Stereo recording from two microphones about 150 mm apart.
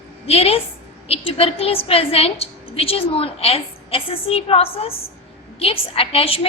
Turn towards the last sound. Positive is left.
turn(degrees=40)  # may be behind; listen again after turning